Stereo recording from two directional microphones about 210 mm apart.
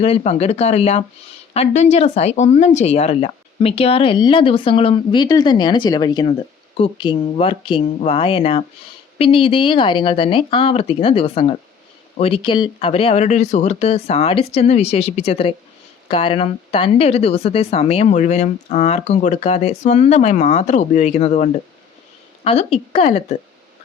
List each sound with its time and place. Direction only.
0.0 s speech: 30° left (ahead or behind)